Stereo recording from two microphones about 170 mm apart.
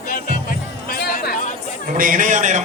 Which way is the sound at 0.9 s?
65° left (ahead or behind).